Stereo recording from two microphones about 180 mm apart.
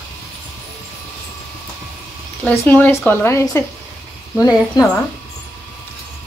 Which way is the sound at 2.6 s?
10° left (ahead or behind).